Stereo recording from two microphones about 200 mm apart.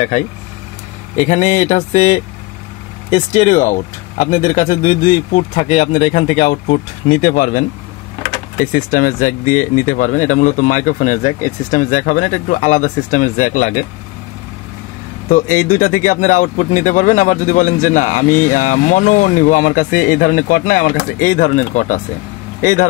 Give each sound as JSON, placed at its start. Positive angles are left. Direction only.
{"t": 1.1, "sound": "speech", "side_deg": 35}
{"t": 15.2, "sound": "speech", "side_deg": 40}